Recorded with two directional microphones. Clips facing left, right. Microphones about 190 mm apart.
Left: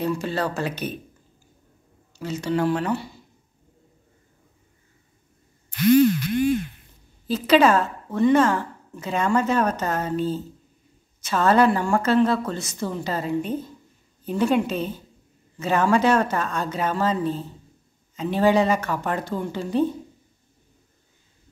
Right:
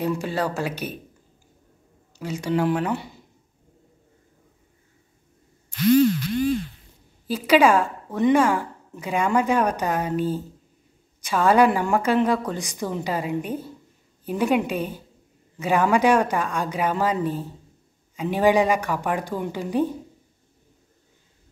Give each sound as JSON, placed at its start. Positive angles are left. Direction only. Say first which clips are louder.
{"t": 0.0, "sound": "a woman's voice", "louder": "even", "side_deg": -10}
{"t": 2.1, "sound": "a woman's voice", "louder": "even", "side_deg": -15}
{"t": 6.0, "sound": "a sound", "louder": "left 1 dB", "side_deg": 55}
{"t": 7.2, "sound": "a woman's voice", "louder": "even", "side_deg": -10}